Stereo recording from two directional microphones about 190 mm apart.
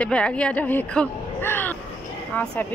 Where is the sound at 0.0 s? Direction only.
5° left (ahead or behind).